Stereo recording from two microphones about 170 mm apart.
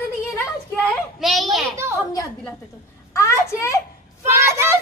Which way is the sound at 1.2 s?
Centre (ahead or behind).